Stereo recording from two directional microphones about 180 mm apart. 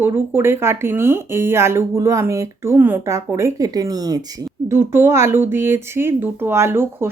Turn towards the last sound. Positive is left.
turn(degrees=-15)  # may be behind; listen again after turning